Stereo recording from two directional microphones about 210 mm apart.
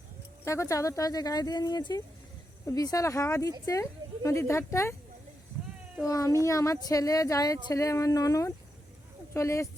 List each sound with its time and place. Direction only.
0.4 s speech: 15° left (ahead or behind)
6.1 s speech: 15° left (ahead or behind)